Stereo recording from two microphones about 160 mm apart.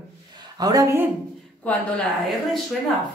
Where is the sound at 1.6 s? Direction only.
10° left (ahead or behind).